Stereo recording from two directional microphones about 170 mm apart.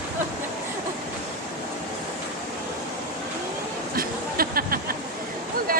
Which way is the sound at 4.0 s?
60° right (ahead or behind).